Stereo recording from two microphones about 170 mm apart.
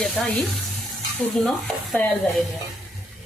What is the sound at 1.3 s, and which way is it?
Stir, centre (ahead or behind).